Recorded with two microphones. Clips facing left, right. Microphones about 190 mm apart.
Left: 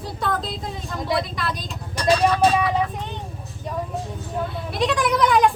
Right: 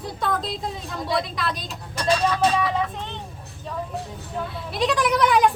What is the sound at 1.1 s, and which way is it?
Speech, centre (ahead or behind).